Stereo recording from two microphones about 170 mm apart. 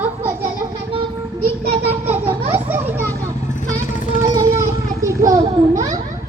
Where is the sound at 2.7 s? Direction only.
10° right (ahead or behind).